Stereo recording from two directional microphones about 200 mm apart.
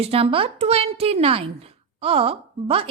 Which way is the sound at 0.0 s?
30° right (ahead or behind).